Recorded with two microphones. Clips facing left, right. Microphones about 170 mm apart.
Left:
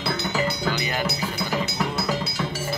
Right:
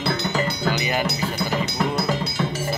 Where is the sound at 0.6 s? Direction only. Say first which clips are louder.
Right 3 dB; 10° right (ahead or behind).